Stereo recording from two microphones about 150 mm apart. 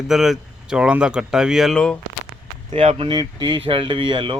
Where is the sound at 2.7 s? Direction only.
35° right (ahead or behind).